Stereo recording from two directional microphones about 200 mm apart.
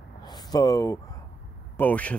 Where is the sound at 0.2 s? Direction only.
20° left (ahead or behind).